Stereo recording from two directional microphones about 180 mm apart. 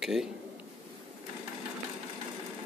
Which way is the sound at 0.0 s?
Centre (ahead or behind).